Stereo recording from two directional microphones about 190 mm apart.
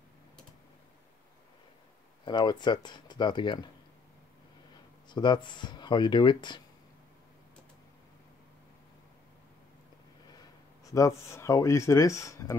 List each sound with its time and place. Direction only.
2.2 s speech: 25° left (ahead or behind)
5.1 s speech: 25° left (ahead or behind)
10.9 s speech: 15° left (ahead or behind)